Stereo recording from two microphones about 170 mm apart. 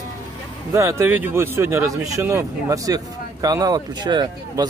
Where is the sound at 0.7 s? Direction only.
15° right (ahead or behind).